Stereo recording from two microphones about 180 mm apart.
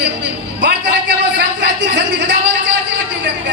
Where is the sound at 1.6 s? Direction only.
75° right (ahead or behind).